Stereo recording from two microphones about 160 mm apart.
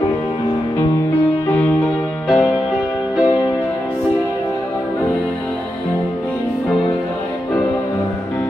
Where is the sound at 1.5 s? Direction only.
10° left (ahead or behind).